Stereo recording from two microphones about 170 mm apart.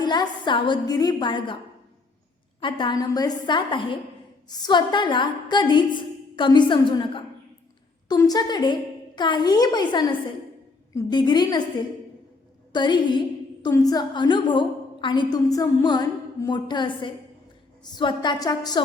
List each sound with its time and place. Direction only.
0.0 s a woman's voice: 25° left (ahead or behind)
2.6 s a woman's voice: 30° left (ahead or behind)
12.7 s a woman's voice: 25° left (ahead or behind)